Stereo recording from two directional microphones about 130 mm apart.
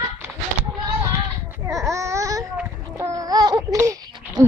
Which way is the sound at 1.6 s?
25° right (ahead or behind).